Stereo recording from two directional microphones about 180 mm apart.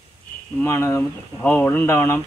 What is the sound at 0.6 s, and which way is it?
A man's voice, 15° left (ahead or behind).